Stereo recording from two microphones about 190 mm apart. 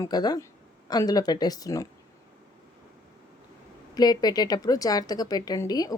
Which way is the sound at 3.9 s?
20° left (ahead or behind).